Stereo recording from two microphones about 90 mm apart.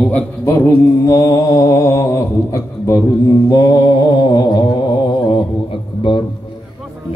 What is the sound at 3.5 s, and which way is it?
Mantra, 45° left (ahead or behind).